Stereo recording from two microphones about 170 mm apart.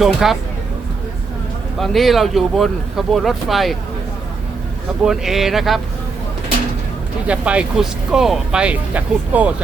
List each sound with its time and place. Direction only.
0.0 s speech: centre (ahead or behind)
1.8 s speech: centre (ahead or behind)
5.0 s speech: centre (ahead or behind)
7.3 s speech: 5° right (ahead or behind)